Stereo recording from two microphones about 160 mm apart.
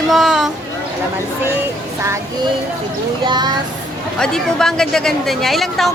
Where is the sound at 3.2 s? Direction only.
25° right (ahead or behind).